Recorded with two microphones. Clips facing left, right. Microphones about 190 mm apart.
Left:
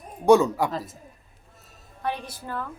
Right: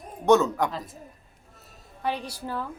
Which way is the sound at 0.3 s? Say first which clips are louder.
Left 2 dB; 10° left (ahead or behind).